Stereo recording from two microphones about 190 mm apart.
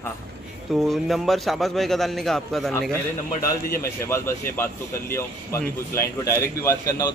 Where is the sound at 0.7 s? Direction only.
Centre (ahead or behind).